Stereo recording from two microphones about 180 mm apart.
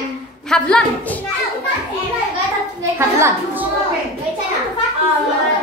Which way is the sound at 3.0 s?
15° right (ahead or behind).